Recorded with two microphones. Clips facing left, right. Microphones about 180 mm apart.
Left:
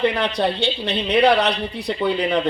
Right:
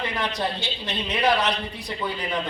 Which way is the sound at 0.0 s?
65° left (ahead or behind).